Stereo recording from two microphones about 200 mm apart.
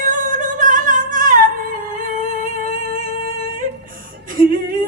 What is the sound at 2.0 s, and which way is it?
Humming, 40° right (ahead or behind).